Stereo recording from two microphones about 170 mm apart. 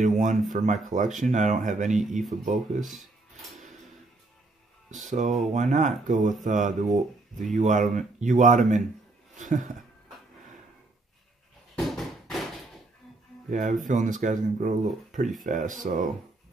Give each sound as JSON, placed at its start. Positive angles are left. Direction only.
{"t": 0.0, "sound": "speech", "side_deg": -45}
{"t": 5.0, "sound": "speech", "side_deg": -45}
{"t": 11.7, "sound": "bouncing", "side_deg": 0}
{"t": 13.5, "sound": "speech", "side_deg": -50}